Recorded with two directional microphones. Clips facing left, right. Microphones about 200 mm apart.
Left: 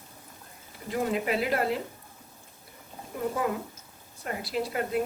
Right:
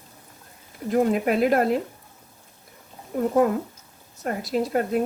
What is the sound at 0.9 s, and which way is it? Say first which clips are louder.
Speech: right 7 dB; 50° right (ahead or behind).